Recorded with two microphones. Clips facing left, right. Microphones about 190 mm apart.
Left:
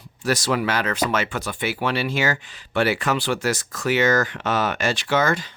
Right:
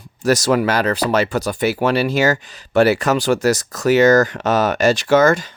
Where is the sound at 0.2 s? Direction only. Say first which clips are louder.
Right 7 dB; 45° right (ahead or behind).